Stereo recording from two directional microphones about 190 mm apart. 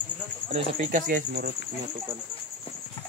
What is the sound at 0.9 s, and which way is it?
Speech, 45° right (ahead or behind).